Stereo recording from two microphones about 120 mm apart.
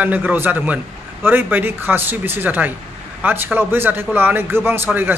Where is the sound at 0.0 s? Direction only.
15° right (ahead or behind).